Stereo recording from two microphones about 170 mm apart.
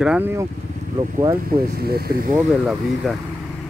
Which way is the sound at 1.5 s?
65° right (ahead or behind).